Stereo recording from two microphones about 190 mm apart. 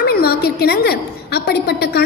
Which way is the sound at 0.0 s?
55° left (ahead or behind).